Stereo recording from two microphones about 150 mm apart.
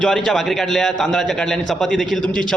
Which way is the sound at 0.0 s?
5° left (ahead or behind).